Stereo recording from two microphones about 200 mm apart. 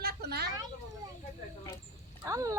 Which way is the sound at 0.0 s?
55° right (ahead or behind).